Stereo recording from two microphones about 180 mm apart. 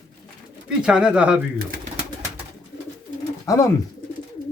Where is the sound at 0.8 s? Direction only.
5° right (ahead or behind).